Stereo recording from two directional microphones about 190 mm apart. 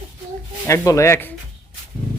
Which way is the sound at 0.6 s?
15° left (ahead or behind).